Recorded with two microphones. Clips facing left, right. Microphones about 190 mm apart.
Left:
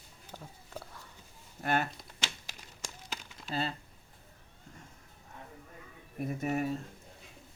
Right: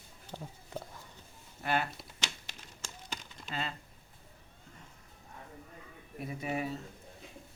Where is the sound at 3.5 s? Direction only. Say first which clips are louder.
Left 4 dB; 35° left (ahead or behind).